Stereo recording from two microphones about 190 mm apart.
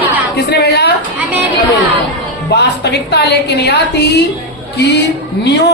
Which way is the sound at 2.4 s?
60° left (ahead or behind).